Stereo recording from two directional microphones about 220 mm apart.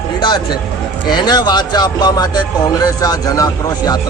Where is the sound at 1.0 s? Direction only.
20° left (ahead or behind).